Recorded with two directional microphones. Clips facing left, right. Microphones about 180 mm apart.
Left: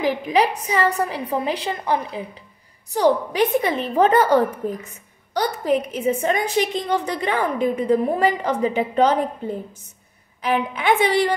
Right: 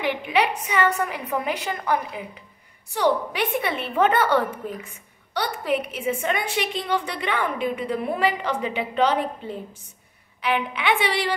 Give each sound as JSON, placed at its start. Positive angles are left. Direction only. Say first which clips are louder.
{"t": 0.0, "sound": "a woman's voice", "louder": "left 4 dB", "side_deg": 40}